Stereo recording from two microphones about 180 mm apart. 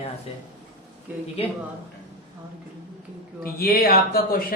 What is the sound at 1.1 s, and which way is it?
Speech, 10° right (ahead or behind).